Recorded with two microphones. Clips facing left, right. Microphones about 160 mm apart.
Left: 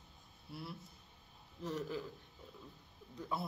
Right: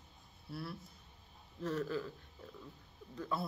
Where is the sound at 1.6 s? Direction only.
15° left (ahead or behind).